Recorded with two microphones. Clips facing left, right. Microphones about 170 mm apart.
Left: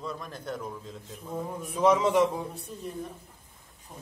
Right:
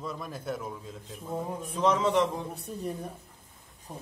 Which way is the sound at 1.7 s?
10° left (ahead or behind).